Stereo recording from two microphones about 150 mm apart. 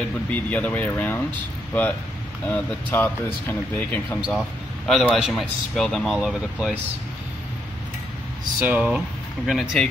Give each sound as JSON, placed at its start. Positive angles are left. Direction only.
{"t": 0.3, "sound": "speech", "side_deg": 10}
{"t": 8.5, "sound": "speech", "side_deg": -10}